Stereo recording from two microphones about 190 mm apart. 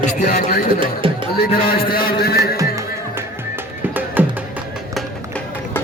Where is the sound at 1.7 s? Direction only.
50° left (ahead or behind).